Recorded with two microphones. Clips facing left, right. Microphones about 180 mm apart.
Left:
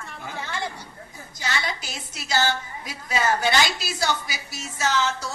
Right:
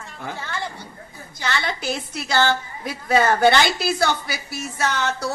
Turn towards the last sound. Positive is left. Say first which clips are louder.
# right 1 dB
turn(degrees=-60)  # may be behind; listen again after turning